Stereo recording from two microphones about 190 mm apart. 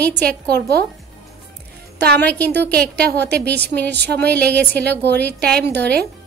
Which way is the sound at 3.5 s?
60° right (ahead or behind).